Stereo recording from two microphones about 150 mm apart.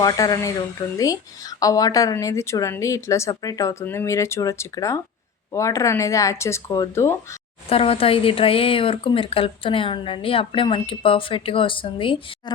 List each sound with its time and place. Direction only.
0.0 s speech: 25° left (ahead or behind)
7.7 s a woman's voice: 40° left (ahead or behind)